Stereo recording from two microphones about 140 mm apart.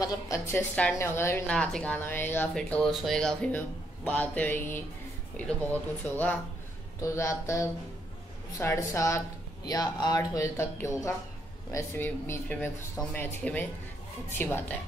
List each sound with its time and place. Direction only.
0.0 s speech: 20° left (ahead or behind)
2.5 s speech: 5° left (ahead or behind)
7.0 s speech: 20° left (ahead or behind)